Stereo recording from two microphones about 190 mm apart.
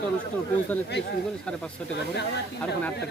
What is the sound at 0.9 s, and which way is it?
Speech, 60° left (ahead or behind).